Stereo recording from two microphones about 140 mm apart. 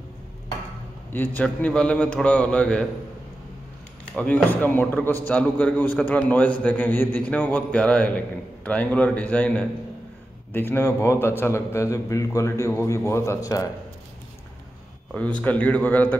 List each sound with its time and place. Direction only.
1.1 s a man's voice: 15° left (ahead or behind)
4.1 s a man's voice: 10° left (ahead or behind); by 13.7 s 25° left (ahead or behind)
15.1 s a man's voice: 10° left (ahead or behind)